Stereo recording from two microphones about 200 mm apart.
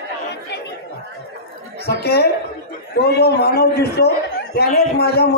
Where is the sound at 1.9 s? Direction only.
55° left (ahead or behind).